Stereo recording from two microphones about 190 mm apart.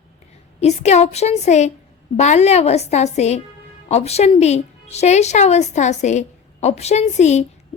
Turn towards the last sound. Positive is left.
turn(degrees=35)  # may be behind; listen again after turning